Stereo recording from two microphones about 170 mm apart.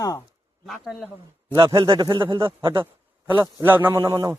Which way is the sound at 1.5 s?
20° right (ahead or behind).